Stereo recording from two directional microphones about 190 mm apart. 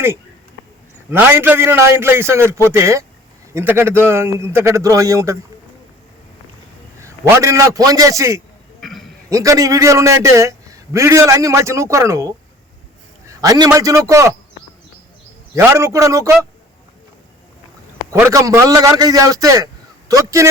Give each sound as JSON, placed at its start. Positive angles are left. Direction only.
{"t": 1.1, "sound": "a man's voice", "side_deg": -10}
{"t": 7.0, "sound": "a man's voice", "side_deg": -15}
{"t": 8.8, "sound": "a sound", "side_deg": 0}
{"t": 9.3, "sound": "a man's voice", "side_deg": -15}
{"t": 13.4, "sound": "a man's voice", "side_deg": -20}
{"t": 15.5, "sound": "a man's voice", "side_deg": -15}
{"t": 18.1, "sound": "a man's voice", "side_deg": -15}